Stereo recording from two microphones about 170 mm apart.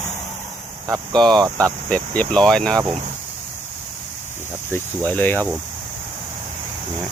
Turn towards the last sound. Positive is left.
turn(degrees=10)  # may be behind; listen again after turning